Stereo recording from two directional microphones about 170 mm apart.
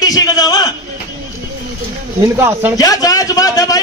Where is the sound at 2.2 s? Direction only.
15° right (ahead or behind).